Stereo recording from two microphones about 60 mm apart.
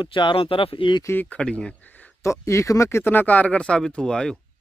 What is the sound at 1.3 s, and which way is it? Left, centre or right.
Speech, centre.